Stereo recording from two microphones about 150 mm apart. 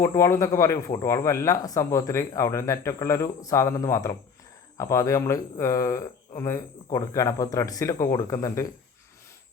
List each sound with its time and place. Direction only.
0.0 s speech: 20° left (ahead or behind)